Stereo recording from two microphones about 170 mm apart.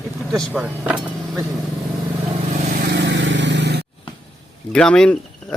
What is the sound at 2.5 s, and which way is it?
Vehicle, 50° right (ahead or behind).